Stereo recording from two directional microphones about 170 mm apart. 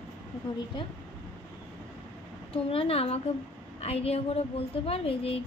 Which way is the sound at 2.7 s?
35° left (ahead or behind).